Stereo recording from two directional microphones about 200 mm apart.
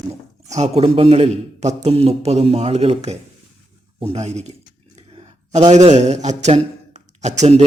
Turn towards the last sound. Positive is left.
turn(degrees=-35)  # may be behind; listen again after turning